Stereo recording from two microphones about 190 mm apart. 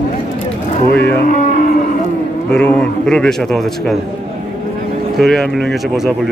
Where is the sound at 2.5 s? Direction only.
5° left (ahead or behind).